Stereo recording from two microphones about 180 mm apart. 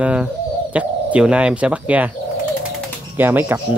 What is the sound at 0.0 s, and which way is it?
Speech, 5° right (ahead or behind).